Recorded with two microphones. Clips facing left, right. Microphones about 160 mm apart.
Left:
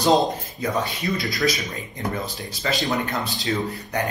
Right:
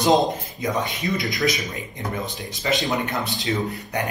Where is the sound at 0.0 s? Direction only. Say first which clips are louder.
Even; 20° right (ahead or behind).